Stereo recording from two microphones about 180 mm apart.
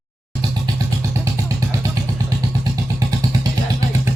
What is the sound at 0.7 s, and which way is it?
Vehicle, 25° right (ahead or behind).